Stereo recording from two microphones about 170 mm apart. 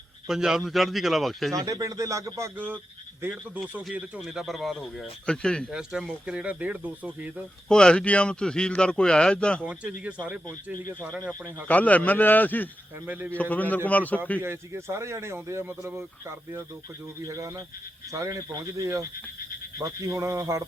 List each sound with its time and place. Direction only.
0.3 s speech: 5° right (ahead or behind)
1.5 s speech: 20° right (ahead or behind)
7.7 s speech: 5° left (ahead or behind)
11.3 s a man's voice: 10° left (ahead or behind)
13.1 s speech: 10° right (ahead or behind)
13.3 s a man's voice: 10° left (ahead or behind)
14.4 s speech: 15° right (ahead or behind)